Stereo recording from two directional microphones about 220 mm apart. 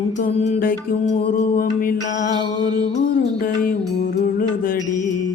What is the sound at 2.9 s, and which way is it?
Music, 35° left (ahead or behind).